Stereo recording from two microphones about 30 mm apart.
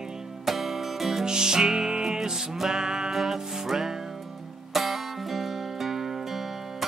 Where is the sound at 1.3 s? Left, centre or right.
Right.